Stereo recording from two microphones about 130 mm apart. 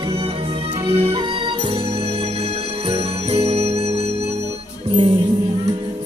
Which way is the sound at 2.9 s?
50° right (ahead or behind).